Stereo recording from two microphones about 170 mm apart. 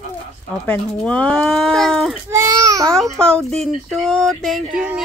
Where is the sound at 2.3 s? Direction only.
20° right (ahead or behind).